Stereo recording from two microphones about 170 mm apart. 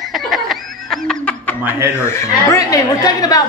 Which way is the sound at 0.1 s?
Centre (ahead or behind).